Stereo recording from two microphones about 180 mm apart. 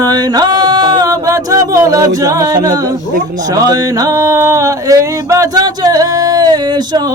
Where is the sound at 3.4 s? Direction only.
20° right (ahead or behind).